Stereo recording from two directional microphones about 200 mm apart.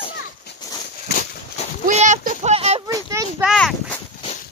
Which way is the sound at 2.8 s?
15° right (ahead or behind).